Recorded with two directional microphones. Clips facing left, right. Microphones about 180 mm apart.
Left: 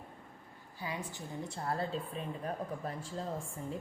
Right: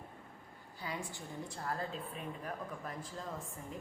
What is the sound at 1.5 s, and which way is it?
A woman's voice, 30° left (ahead or behind).